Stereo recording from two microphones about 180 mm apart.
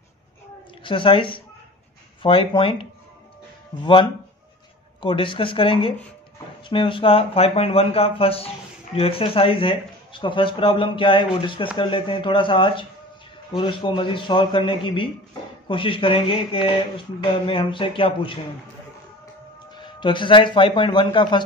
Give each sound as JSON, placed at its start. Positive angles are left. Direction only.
{"t": 0.8, "sound": "speech", "side_deg": 30}
{"t": 19.8, "sound": "speech", "side_deg": 25}